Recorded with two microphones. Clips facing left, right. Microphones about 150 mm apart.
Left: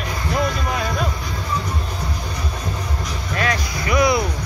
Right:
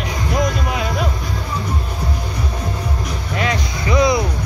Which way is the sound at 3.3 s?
20° right (ahead or behind).